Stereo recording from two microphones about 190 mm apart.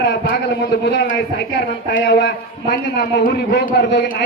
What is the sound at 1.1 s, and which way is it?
A man's voice, 70° left (ahead or behind).